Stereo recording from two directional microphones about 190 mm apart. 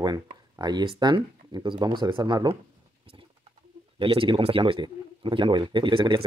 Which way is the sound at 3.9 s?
30° right (ahead or behind).